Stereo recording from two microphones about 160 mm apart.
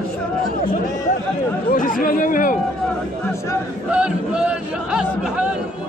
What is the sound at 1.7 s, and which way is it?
Speech, 60° left (ahead or behind).